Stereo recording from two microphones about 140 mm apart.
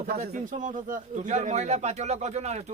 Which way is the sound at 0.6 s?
65° right (ahead or behind).